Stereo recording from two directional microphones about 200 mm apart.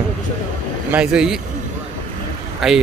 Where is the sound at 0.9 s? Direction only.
5° right (ahead or behind).